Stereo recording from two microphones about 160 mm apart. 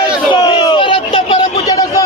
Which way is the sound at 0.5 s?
30° left (ahead or behind).